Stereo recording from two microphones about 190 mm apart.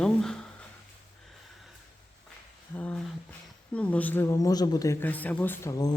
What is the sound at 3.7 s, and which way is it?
Speech, 5° left (ahead or behind).